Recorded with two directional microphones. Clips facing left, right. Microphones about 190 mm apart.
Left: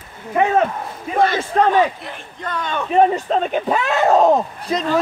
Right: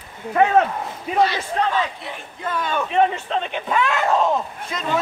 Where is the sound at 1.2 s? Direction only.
50° left (ahead or behind).